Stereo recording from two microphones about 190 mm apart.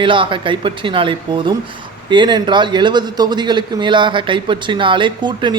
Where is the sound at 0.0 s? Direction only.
25° right (ahead or behind).